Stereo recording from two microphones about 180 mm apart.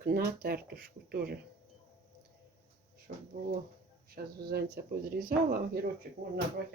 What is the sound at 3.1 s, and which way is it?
Speech, 50° right (ahead or behind).